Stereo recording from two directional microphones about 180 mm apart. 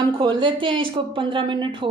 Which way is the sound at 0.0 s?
25° right (ahead or behind).